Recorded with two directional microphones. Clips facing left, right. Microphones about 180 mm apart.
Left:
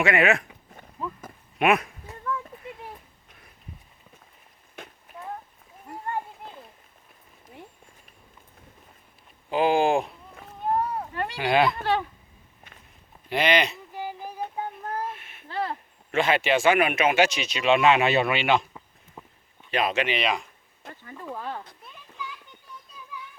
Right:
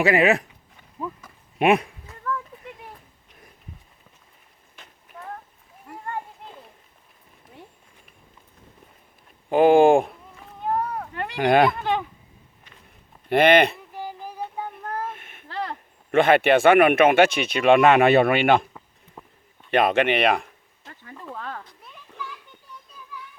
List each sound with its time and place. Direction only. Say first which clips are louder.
0.0 s speech: right 3 dB; 35° right (ahead or behind)
1.0 s sheep: right 2 dB; 15° right (ahead or behind)
1.5 s speech: right 3 dB; 30° right (ahead or behind)
9.5 s speech: right 7 dB; 50° right (ahead or behind)
10.7 s a sound: even; 10° left (ahead or behind)
11.3 s speech: right 5 dB; 50° right (ahead or behind)
13.2 s speech: right 7 dB; 55° right (ahead or behind)
13.9 s a sound: even; 10° left (ahead or behind)
15.1 s a sound: right 1 dB; 50° right (ahead or behind)
16.1 s speech: right 6 dB; 55° right (ahead or behind)
19.7 s speech: right 6 dB; 55° right (ahead or behind)
21.2 s speech: left 1 dB; 15° left (ahead or behind)